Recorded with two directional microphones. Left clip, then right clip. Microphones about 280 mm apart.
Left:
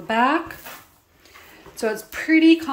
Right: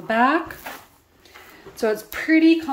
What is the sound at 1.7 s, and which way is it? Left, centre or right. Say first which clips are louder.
Speech: right 2 dB; centre.